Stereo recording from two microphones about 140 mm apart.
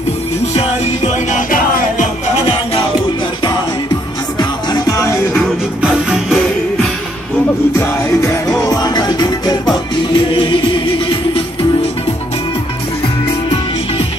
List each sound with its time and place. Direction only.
0.6 s music: 60° left (ahead or behind)
4.4 s music: 30° left (ahead or behind)
5.8 s music: 5° right (ahead or behind)
7.8 s music: 25° left (ahead or behind)